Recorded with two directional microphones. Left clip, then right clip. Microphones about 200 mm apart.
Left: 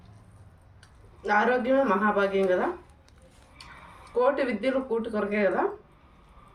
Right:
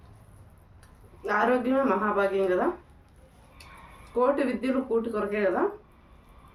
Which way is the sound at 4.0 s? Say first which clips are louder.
Even; 15° right (ahead or behind).